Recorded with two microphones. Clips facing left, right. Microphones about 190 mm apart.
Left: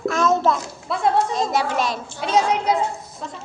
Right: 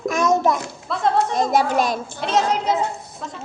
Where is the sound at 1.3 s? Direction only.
50° right (ahead or behind).